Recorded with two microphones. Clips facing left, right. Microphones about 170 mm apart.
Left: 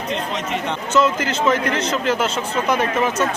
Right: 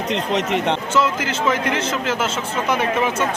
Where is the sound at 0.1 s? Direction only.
75° right (ahead or behind).